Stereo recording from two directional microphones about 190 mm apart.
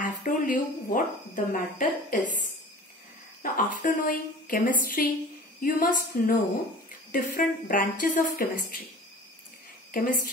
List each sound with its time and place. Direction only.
0.0 s speech: 45° left (ahead or behind)
3.4 s speech: 45° left (ahead or behind)
9.8 s a woman's voice: 50° left (ahead or behind)